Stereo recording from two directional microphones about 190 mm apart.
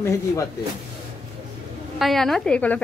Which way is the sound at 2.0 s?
Centre (ahead or behind).